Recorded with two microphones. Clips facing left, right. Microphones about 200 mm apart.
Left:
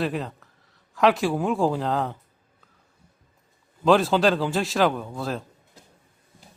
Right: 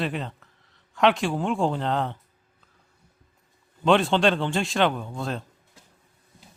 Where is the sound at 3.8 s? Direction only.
Centre (ahead or behind).